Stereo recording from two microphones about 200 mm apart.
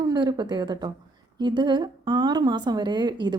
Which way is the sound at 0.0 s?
20° right (ahead or behind).